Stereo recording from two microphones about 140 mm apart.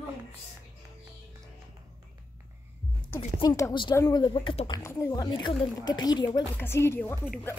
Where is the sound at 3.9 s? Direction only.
20° left (ahead or behind).